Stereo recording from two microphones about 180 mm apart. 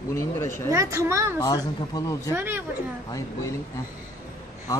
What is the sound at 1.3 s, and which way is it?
Speech, 20° left (ahead or behind).